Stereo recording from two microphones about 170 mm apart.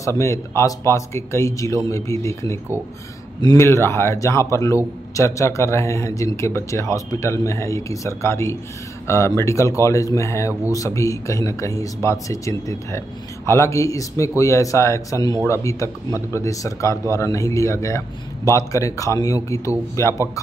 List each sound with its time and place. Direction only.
0.0 s a man's voice: 15° left (ahead or behind)